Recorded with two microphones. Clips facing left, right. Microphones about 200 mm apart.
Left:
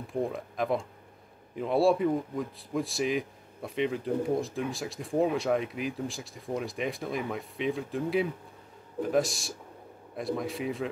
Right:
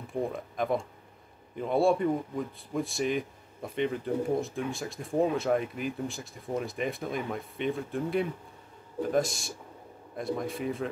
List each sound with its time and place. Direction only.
0.1 s a man's voice: centre (ahead or behind)